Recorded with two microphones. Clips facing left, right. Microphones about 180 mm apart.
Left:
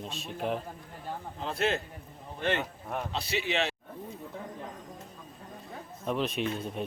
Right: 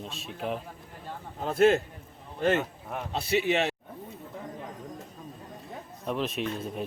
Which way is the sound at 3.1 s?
50° right (ahead or behind).